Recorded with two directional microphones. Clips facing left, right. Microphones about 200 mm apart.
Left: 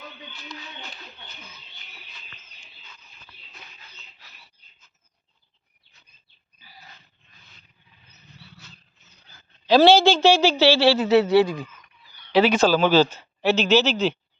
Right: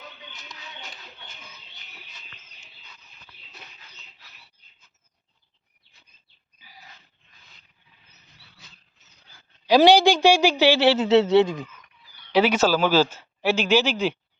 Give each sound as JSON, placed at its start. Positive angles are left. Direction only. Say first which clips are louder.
{"t": 6.6, "sound": "a sound", "louder": "even", "side_deg": -15}
{"t": 9.3, "sound": "a woman's voice", "louder": "left 1 dB", "side_deg": -15}
{"t": 12.3, "sound": "speech", "louder": "left 2 dB", "side_deg": -10}